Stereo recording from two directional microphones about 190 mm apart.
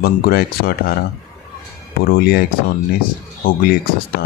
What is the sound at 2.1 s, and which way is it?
Speech, 50° left (ahead or behind).